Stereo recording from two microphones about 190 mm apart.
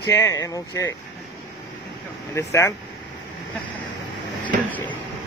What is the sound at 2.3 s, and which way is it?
Speech, 15° left (ahead or behind).